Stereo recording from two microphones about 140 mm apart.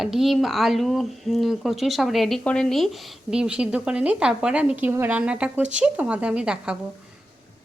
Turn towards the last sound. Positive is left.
turn(degrees=-5)  # may be behind; listen again after turning